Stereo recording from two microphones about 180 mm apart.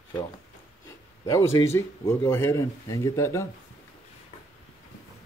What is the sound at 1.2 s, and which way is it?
Speech, 15° left (ahead or behind).